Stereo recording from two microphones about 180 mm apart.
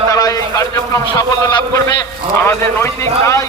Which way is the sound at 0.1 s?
20° left (ahead or behind).